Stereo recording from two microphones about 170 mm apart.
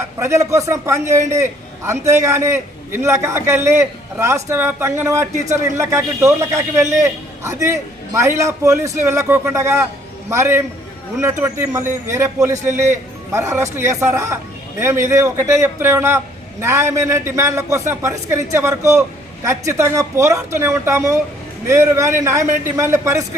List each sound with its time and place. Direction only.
0.2 s a man's voice: 15° right (ahead or behind)